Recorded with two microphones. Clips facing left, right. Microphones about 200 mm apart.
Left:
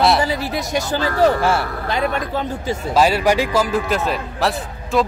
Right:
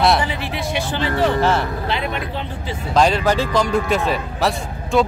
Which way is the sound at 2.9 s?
5° left (ahead or behind).